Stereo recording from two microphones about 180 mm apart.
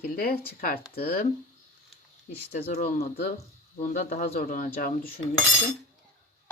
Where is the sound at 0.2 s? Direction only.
55° left (ahead or behind).